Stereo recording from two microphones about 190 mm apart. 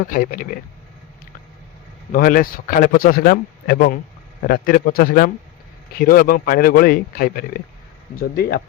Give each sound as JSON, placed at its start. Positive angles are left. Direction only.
{"t": 0.1, "sound": "speech", "side_deg": 45}
{"t": 2.1, "sound": "speech", "side_deg": 45}